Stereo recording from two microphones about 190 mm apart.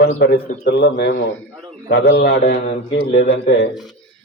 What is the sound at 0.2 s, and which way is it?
A man's voice, 60° left (ahead or behind).